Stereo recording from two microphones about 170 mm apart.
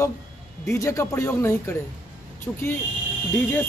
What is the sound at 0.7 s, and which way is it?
A man's voice, 15° left (ahead or behind).